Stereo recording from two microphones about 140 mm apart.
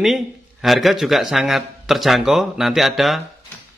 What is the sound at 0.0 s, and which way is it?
A man's voice, centre (ahead or behind).